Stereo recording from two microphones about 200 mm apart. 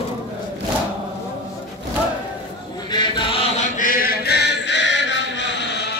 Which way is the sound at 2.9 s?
25° left (ahead or behind).